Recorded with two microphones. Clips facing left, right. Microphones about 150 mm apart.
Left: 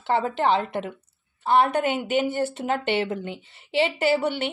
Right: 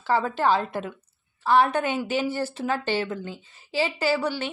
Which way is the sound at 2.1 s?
60° left (ahead or behind).